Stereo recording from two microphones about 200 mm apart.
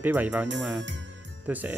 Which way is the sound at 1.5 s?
10° right (ahead or behind).